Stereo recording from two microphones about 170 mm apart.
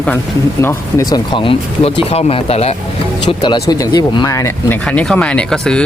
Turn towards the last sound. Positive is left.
turn(degrees=5)  # may be behind; listen again after turning